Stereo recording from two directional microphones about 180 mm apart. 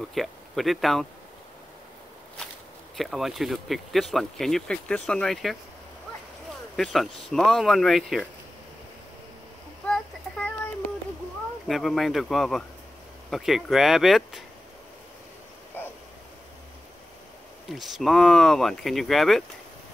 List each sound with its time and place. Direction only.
0.1 s speech: centre (ahead or behind)
3.0 s speech: centre (ahead or behind)
6.8 s speech: centre (ahead or behind)
9.8 s child singing: 5° left (ahead or behind)
11.6 s speech: centre (ahead or behind)
15.8 s bow-wow: 10° left (ahead or behind)
17.6 s speech: centre (ahead or behind)